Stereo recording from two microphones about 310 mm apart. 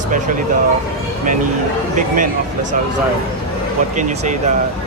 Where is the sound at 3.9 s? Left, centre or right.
Right.